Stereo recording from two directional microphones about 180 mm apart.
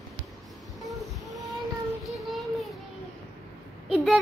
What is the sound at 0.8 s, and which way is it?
Train, centre (ahead or behind).